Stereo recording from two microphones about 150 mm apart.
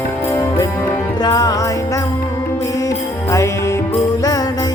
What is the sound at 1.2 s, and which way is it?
Jingle bell, 25° left (ahead or behind).